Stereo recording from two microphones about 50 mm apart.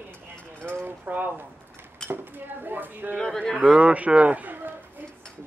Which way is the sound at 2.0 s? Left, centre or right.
Centre.